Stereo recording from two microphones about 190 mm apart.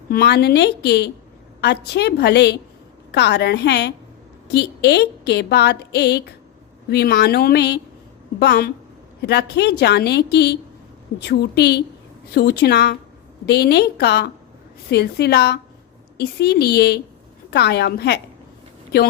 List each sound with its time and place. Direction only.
0.1 s a woman's voice: 55° left (ahead or behind)